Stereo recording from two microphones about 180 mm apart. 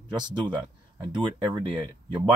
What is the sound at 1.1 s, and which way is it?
Speech, 25° right (ahead or behind).